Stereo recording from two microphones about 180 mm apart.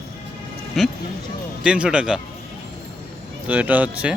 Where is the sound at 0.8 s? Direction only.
Centre (ahead or behind).